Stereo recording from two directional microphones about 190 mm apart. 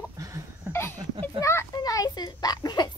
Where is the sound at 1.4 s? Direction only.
15° left (ahead or behind).